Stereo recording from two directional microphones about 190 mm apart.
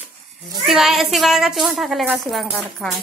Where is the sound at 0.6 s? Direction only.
Centre (ahead or behind).